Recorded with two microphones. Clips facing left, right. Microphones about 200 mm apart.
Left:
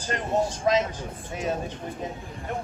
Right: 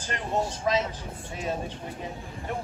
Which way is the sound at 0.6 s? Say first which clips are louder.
Left 3 dB; 45° left (ahead or behind).